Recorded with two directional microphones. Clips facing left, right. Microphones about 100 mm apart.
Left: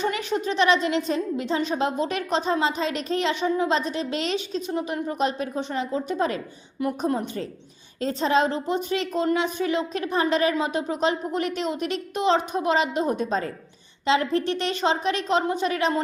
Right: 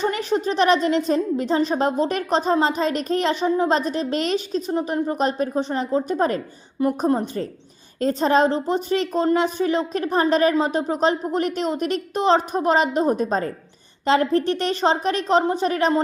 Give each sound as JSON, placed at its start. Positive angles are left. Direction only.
{"t": 0.0, "sound": "a woman's voice", "side_deg": -35}